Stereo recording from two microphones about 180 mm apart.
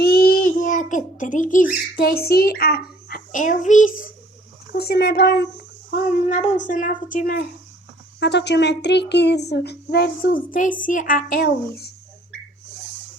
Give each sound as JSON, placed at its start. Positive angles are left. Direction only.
{"t": 0.0, "sound": "a child's voice", "side_deg": 55}
{"t": 4.7, "sound": "a child's voice", "side_deg": 60}
{"t": 5.9, "sound": "speech", "side_deg": 40}
{"t": 8.2, "sound": "a child's voice", "side_deg": 75}